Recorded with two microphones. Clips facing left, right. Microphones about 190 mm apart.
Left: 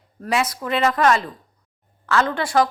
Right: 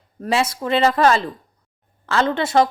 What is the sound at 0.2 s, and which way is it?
A woman's voice, 30° right (ahead or behind).